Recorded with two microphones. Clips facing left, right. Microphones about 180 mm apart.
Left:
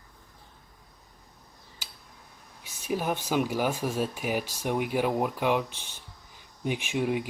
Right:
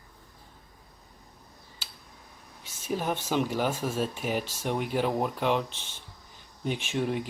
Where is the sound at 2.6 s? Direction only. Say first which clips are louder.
Left 1 dB; 10° left (ahead or behind).